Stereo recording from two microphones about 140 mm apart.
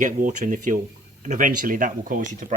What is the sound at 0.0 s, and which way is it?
Speech, 70° right (ahead or behind).